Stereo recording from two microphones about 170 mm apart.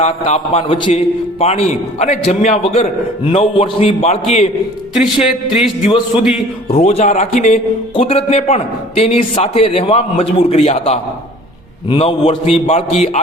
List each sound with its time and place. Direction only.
0.0 s a man's voice: 40° left (ahead or behind)
5.2 s speech: 5° right (ahead or behind)
5.8 s a man's voice: 30° left (ahead or behind)